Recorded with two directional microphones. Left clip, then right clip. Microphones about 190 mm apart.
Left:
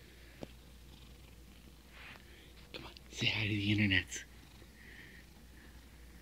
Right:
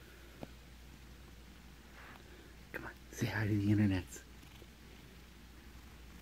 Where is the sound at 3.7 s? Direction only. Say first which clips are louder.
Left 6 dB; centre (ahead or behind).